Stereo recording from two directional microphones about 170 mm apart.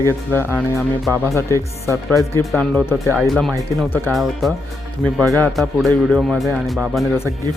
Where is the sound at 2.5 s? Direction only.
5° left (ahead or behind).